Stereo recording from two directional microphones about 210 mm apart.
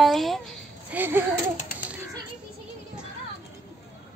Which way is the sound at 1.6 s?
45° left (ahead or behind).